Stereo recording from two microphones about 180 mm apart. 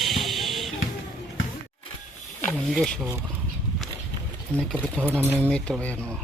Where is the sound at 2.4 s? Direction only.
5° left (ahead or behind).